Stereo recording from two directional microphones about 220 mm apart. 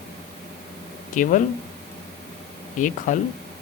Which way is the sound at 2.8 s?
35° left (ahead or behind).